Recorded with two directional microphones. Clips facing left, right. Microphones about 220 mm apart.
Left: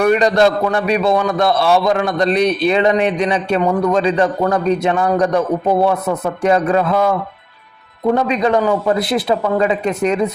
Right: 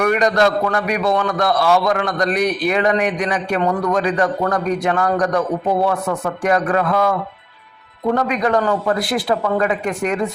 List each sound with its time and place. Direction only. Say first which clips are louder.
0.0 s a man's voice: left 3 dB; 30° left (ahead or behind)
8.1 s a man's voice: left 2 dB; 25° left (ahead or behind)